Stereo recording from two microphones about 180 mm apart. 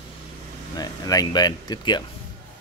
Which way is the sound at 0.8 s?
20° left (ahead or behind).